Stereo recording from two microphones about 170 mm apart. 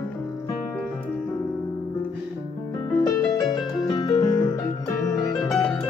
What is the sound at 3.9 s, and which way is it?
Music, 20° left (ahead or behind).